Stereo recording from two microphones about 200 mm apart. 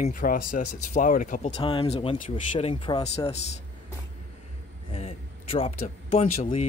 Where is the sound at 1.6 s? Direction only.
25° left (ahead or behind).